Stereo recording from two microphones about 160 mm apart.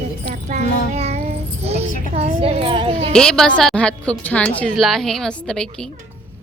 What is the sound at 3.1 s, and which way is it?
A woman's voice, 5° left (ahead or behind).